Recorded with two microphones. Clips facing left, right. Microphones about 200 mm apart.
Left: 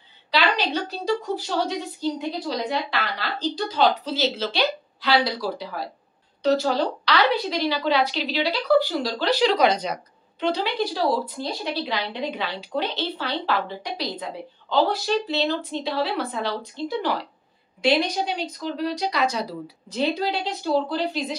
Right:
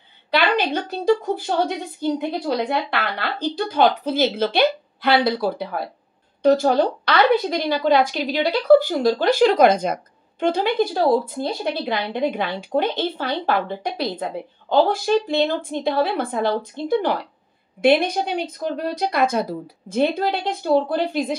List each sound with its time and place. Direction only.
0.3 s a woman's voice: 55° right (ahead or behind)